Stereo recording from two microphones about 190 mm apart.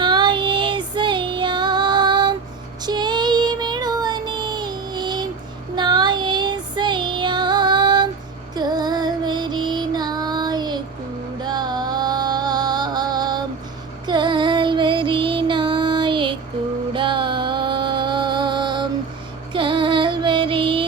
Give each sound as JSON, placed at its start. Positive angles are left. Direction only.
{"t": 0.0, "sound": "child singing", "side_deg": -25}
{"t": 8.5, "sound": "music", "side_deg": -20}
{"t": 14.1, "sound": "child singing", "side_deg": -25}
{"t": 16.9, "sound": "music", "side_deg": -25}